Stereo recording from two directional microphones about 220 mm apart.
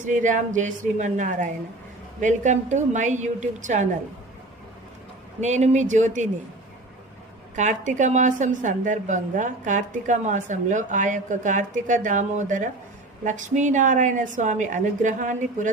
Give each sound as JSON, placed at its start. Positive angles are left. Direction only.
{"t": 0.0, "sound": "a woman's voice", "side_deg": -35}
{"t": 5.4, "sound": "a woman's voice", "side_deg": -30}
{"t": 7.5, "sound": "a woman's voice", "side_deg": -35}